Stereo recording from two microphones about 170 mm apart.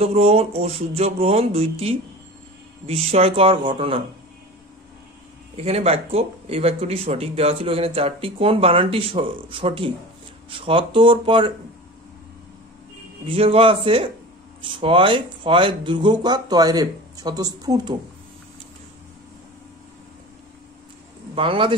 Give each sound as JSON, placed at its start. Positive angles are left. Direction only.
{"t": 0.0, "sound": "speech", "side_deg": -35}
{"t": 5.6, "sound": "speech", "side_deg": -35}
{"t": 13.3, "sound": "speech", "side_deg": -30}
{"t": 21.4, "sound": "speech", "side_deg": -30}